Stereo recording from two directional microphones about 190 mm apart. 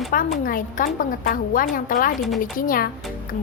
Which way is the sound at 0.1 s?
45° left (ahead or behind).